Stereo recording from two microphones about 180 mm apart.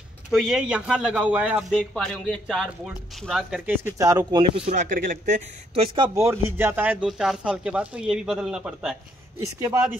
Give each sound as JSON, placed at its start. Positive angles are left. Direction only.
{"t": 0.3, "sound": "speech", "side_deg": 0}
{"t": 5.8, "sound": "speech", "side_deg": -25}